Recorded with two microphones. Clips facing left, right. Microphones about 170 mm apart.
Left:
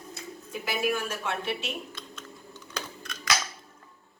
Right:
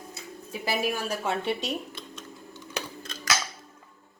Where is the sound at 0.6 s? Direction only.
35° right (ahead or behind).